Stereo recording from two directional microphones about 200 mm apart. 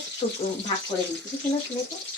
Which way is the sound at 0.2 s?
40° left (ahead or behind).